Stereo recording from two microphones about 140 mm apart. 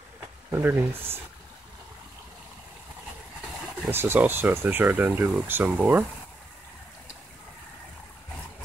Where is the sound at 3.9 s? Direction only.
15° right (ahead or behind).